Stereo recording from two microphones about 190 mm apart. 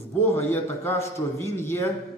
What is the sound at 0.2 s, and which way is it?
A man's voice, 10° left (ahead or behind).